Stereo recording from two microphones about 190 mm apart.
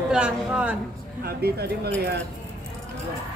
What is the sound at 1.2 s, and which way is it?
Speech, 55° right (ahead or behind).